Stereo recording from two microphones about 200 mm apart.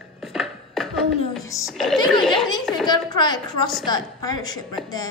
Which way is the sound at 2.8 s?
20° left (ahead or behind).